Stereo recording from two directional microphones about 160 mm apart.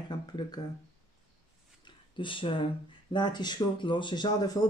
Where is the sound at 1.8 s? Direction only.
30° left (ahead or behind).